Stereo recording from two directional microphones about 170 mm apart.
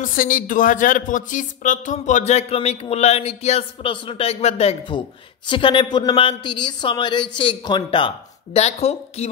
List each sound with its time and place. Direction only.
0.0 s speech: 55° left (ahead or behind); by 8.1 s 30° left (ahead or behind)
8.5 s speech: 40° left (ahead or behind)